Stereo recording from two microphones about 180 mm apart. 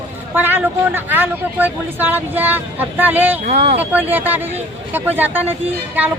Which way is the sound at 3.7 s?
10° right (ahead or behind).